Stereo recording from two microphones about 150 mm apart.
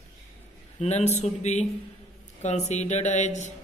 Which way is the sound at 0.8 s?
50° left (ahead or behind).